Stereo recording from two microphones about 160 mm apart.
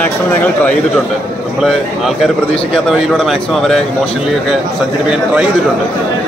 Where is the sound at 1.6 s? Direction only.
Centre (ahead or behind).